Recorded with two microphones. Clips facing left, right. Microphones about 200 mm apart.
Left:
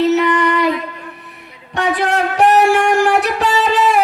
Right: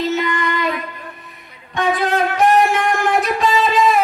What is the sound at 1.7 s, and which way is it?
Music, 70° left (ahead or behind).